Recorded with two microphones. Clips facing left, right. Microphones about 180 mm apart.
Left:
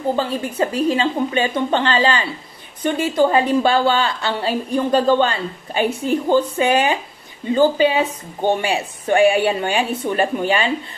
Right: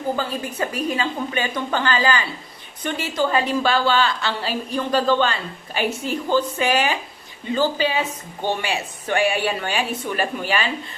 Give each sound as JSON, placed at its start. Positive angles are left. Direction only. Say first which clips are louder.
{"t": 0.2, "sound": "a woman's voice", "louder": "left 5 dB", "side_deg": 30}
{"t": 6.6, "sound": "speech", "louder": "left 4 dB", "side_deg": 30}
{"t": 7.5, "sound": "a woman's voice", "louder": "left 6 dB", "side_deg": 20}
{"t": 8.6, "sound": "a woman's voice", "louder": "left 5 dB", "side_deg": 30}